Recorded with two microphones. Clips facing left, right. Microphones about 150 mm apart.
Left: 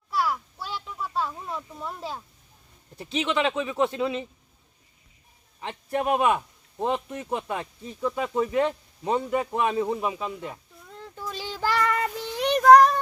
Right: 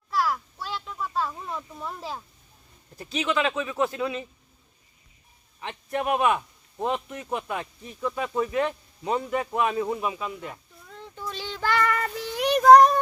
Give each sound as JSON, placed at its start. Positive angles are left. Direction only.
{"t": 0.1, "sound": "a sound", "side_deg": 0}
{"t": 2.9, "sound": "a man's voice", "side_deg": 25}
{"t": 5.5, "sound": "a man's voice", "side_deg": 30}
{"t": 10.9, "sound": "child singing", "side_deg": 5}